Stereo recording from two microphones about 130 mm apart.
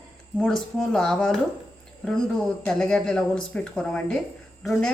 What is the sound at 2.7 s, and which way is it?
Speech, 5° left (ahead or behind).